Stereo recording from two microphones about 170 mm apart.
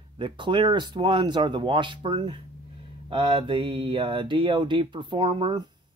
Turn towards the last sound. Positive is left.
turn(degrees=-30)  # may be behind; listen again after turning